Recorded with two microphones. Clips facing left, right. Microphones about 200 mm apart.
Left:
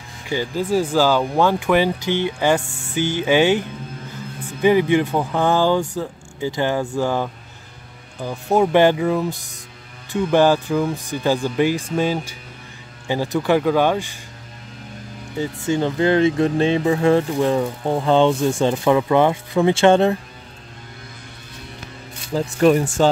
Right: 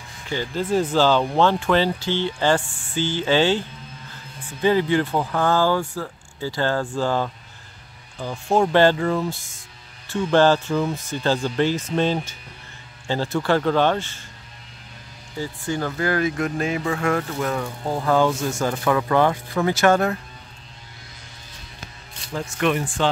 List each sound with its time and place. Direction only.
0.3 s speech: 10° left (ahead or behind)
15.3 s speech: 20° left (ahead or behind)
22.3 s speech: 35° left (ahead or behind)